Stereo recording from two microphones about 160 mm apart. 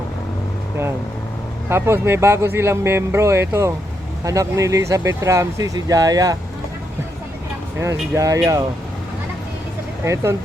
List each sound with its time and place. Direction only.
1.7 s speech: 15° right (ahead or behind)
7.8 s speech: 20° right (ahead or behind)
10.0 s speech: 15° right (ahead or behind)